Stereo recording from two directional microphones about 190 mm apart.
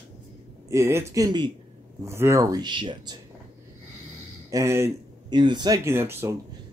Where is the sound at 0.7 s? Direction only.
15° right (ahead or behind).